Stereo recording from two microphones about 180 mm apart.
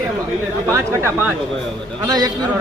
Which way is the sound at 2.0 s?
20° right (ahead or behind).